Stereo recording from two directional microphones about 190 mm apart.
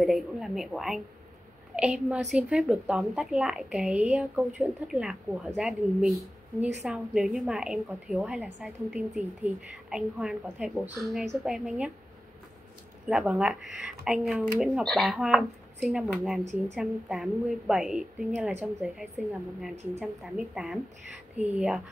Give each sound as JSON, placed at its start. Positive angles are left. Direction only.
{"t": 0.0, "sound": "a woman's voice", "side_deg": 0}
{"t": 13.1, "sound": "a woman's voice", "side_deg": -5}